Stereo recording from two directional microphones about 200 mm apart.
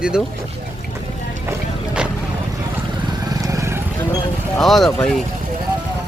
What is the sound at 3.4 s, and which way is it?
Vehicle, 15° right (ahead or behind).